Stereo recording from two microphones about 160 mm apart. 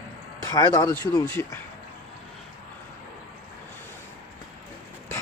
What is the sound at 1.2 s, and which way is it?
Speech, 15° left (ahead or behind).